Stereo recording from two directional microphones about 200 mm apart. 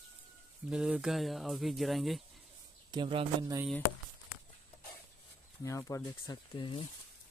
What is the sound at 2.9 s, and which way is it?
Speech, 25° right (ahead or behind).